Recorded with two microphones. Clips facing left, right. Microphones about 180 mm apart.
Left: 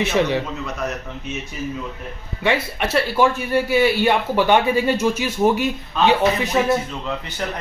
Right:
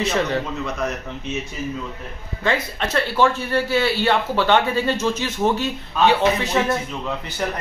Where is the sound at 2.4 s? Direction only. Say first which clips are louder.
Left 2 dB; 15° left (ahead or behind).